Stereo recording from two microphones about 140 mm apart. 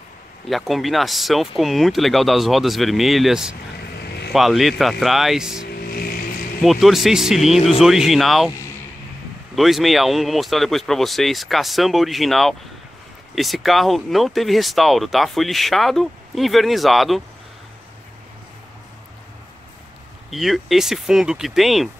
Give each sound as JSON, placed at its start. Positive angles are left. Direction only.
{"t": 0.5, "sound": "speech", "side_deg": 0}
{"t": 5.8, "sound": "vehicle", "side_deg": 90}
{"t": 6.6, "sound": "speech", "side_deg": 0}
{"t": 9.6, "sound": "speech", "side_deg": 0}
{"t": 20.2, "sound": "speech", "side_deg": 0}